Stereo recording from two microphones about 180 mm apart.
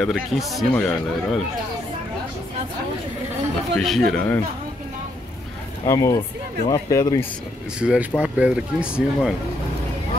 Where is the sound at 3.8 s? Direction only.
Centre (ahead or behind).